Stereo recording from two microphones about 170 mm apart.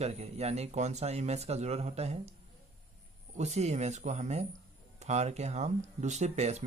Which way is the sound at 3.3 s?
40° right (ahead or behind).